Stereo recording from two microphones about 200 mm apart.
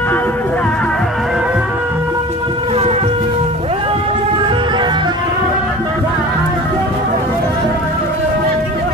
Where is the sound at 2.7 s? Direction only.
30° right (ahead or behind).